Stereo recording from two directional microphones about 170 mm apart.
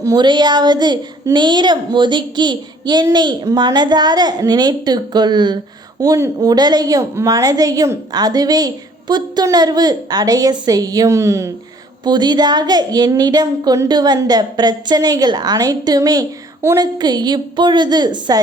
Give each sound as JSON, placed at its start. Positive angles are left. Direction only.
{"t": 0.0, "sound": "a woman's voice", "side_deg": -25}